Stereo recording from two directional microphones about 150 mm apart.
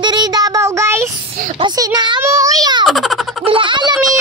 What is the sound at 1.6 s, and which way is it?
Speech, 25° right (ahead or behind).